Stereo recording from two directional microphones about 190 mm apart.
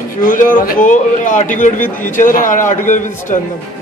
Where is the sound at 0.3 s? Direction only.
45° left (ahead or behind).